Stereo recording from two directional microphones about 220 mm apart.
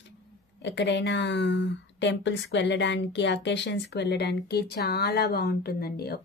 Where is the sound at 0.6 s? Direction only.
55° left (ahead or behind).